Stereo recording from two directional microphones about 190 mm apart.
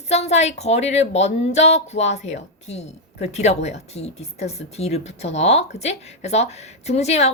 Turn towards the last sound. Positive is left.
turn(degrees=35)  # may be behind; listen again after turning